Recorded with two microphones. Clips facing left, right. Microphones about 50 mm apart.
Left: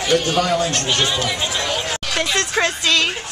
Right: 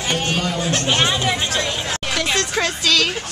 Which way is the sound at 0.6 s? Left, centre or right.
Centre.